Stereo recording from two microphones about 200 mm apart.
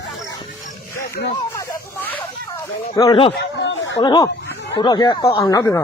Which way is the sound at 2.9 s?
20° left (ahead or behind).